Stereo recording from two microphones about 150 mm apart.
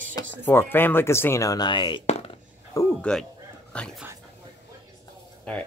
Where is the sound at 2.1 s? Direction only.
45° left (ahead or behind).